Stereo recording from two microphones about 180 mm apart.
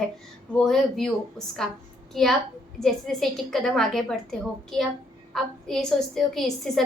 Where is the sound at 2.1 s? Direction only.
Centre (ahead or behind).